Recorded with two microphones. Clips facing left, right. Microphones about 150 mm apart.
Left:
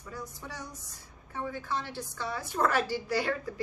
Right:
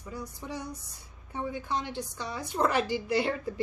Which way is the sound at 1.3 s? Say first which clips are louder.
Right 2 dB; 20° right (ahead or behind).